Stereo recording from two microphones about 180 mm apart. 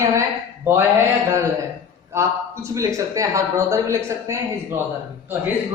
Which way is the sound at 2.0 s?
15° right (ahead or behind).